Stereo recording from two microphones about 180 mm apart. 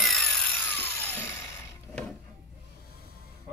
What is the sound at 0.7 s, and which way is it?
Music, 10° left (ahead or behind).